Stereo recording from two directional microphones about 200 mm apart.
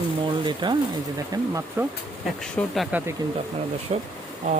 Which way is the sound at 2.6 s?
Centre (ahead or behind).